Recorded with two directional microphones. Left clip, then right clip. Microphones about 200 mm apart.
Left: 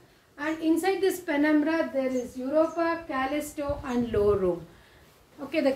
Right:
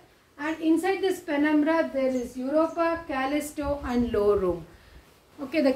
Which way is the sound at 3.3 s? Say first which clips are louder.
Right 2 dB; 5° right (ahead or behind).